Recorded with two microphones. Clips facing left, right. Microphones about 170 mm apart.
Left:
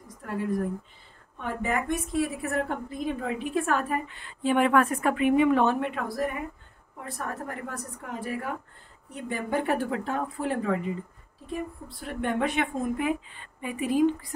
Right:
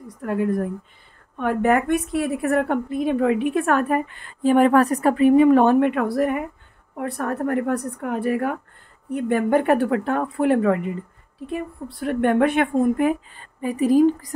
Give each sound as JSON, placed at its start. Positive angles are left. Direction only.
{"t": 0.2, "sound": "a woman's voice", "side_deg": -55}